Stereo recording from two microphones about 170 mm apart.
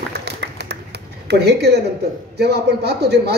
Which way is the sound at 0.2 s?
75° right (ahead or behind).